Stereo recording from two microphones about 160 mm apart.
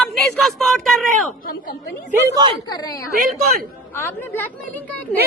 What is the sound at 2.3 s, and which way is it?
Speech, 25° right (ahead or behind).